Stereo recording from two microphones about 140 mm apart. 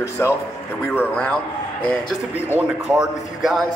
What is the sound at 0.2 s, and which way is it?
A man's voice, 20° left (ahead or behind).